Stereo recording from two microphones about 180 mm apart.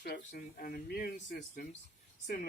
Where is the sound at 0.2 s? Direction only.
50° left (ahead or behind).